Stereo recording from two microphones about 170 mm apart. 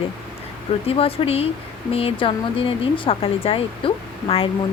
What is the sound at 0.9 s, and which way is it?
Speech, 35° left (ahead or behind).